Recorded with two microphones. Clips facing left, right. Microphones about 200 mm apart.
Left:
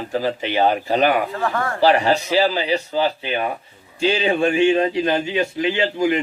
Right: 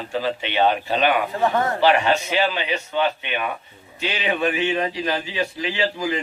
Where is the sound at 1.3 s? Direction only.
20° right (ahead or behind).